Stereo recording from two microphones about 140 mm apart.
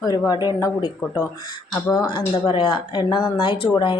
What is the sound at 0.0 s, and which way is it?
Speech, 25° left (ahead or behind).